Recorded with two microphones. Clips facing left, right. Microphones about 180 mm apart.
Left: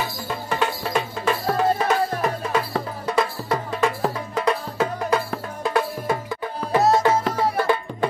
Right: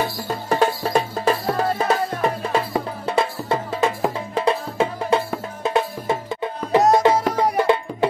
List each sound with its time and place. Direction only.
0.3 s music: 40° right (ahead or behind); by 8.1 s 20° right (ahead or behind)